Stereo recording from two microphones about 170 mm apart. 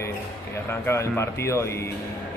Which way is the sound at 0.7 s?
15° left (ahead or behind).